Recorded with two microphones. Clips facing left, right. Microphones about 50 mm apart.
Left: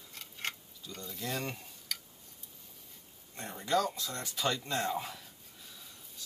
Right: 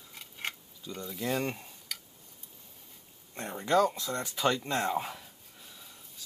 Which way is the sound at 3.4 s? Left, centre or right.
Centre.